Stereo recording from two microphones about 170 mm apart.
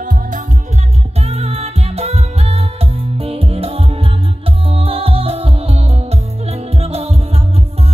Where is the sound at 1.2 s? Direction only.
35° right (ahead or behind).